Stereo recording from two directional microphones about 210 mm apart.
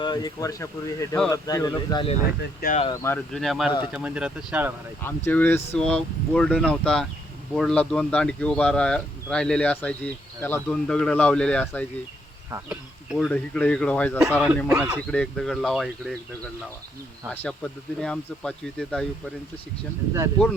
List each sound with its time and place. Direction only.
0.0 s speech: 20° left (ahead or behind)
2.4 s speech: 45° left (ahead or behind)
2.9 s speech: 15° left (ahead or behind)
3.3 s speech: centre (ahead or behind)
5.0 s speech: 10° left (ahead or behind)
12.5 s speech: 10° right (ahead or behind)
13.1 s speech: 5° left (ahead or behind)
14.7 s speech: 10° right (ahead or behind)
15.1 s speech: 5° left (ahead or behind)
17.4 s speech: 5° left (ahead or behind)